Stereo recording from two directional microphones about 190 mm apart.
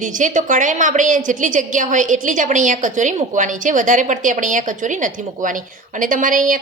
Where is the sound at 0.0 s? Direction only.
40° right (ahead or behind).